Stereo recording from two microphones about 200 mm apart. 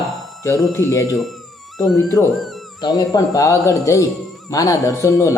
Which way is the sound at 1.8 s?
Centre (ahead or behind).